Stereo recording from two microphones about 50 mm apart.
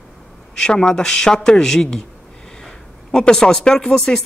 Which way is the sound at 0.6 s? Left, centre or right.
Centre.